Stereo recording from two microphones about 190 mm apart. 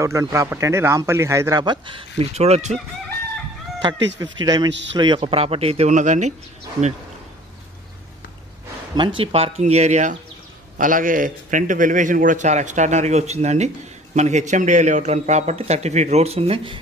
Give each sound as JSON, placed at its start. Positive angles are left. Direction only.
{"t": 0.0, "sound": "speech", "side_deg": -15}
{"t": 4.2, "sound": "speech", "side_deg": -20}
{"t": 4.6, "sound": "speech", "side_deg": -70}
{"t": 4.9, "sound": "a man's voice", "side_deg": -25}
{"t": 8.9, "sound": "a man's voice", "side_deg": -25}